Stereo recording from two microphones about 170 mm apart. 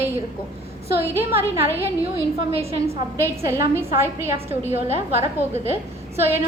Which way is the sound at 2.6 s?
35° right (ahead or behind).